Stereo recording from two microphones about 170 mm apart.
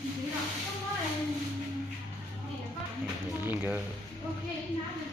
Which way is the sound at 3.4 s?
10° right (ahead or behind).